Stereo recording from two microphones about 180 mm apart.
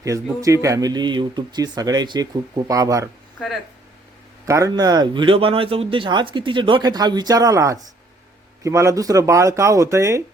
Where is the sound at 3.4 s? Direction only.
Centre (ahead or behind).